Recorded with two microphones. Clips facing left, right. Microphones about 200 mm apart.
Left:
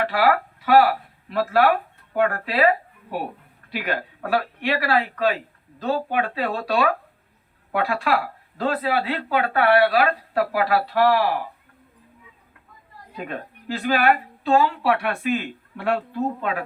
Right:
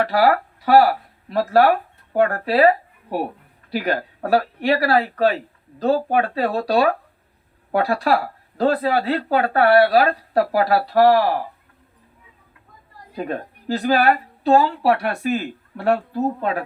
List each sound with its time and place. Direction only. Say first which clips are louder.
0.0 s speech: right 3 dB; 40° right (ahead or behind)
13.1 s speech: right 5 dB; 40° right (ahead or behind)